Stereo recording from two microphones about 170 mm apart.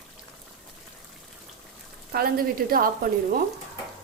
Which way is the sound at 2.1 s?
60° right (ahead or behind).